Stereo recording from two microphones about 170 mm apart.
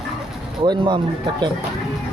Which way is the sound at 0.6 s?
25° right (ahead or behind).